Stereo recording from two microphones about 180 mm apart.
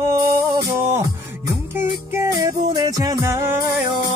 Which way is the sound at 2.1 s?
20° right (ahead or behind).